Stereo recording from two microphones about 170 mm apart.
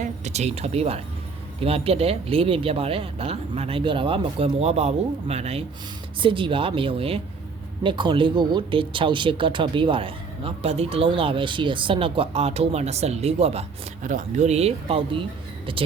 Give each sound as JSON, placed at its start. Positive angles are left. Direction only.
{"t": 0.0, "sound": "speech", "side_deg": -40}